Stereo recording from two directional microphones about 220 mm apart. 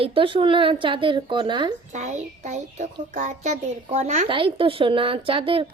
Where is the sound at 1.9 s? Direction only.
30° right (ahead or behind).